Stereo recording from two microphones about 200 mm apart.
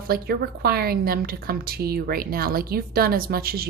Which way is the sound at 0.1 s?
50° right (ahead or behind).